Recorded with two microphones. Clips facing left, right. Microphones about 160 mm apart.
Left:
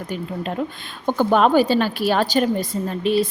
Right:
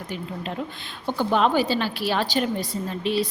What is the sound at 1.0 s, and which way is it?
A woman's voice, 50° left (ahead or behind).